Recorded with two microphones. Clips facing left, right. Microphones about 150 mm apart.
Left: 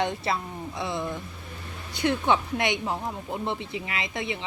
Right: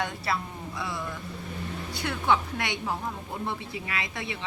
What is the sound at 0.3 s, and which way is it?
Speech, 20° left (ahead or behind).